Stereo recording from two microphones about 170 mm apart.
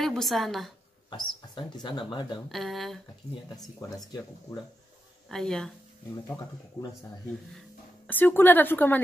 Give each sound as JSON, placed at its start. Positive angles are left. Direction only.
{"t": 0.0, "sound": "a woman's voice", "side_deg": 0}
{"t": 1.1, "sound": "speech", "side_deg": 25}
{"t": 2.5, "sound": "a woman's voice", "side_deg": 0}
{"t": 3.4, "sound": "speech", "side_deg": 20}
{"t": 5.3, "sound": "a woman's voice", "side_deg": 5}
{"t": 6.2, "sound": "speech", "side_deg": 20}
{"t": 8.1, "sound": "speech", "side_deg": 10}